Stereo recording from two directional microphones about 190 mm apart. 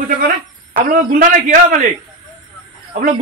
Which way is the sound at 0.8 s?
45° right (ahead or behind).